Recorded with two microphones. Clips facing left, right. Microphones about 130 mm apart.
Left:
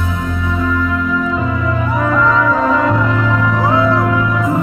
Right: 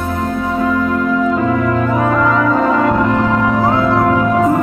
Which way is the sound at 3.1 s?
40° right (ahead or behind).